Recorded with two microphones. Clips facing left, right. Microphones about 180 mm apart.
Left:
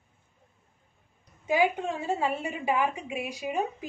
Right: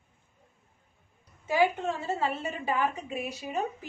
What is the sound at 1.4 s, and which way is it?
A woman's voice, 15° left (ahead or behind).